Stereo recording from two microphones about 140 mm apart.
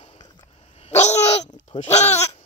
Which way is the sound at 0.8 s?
55° left (ahead or behind).